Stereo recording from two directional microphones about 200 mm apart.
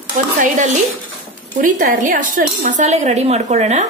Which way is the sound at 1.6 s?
40° right (ahead or behind).